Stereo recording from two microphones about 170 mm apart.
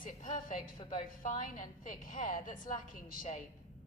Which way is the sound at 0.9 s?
50° left (ahead or behind).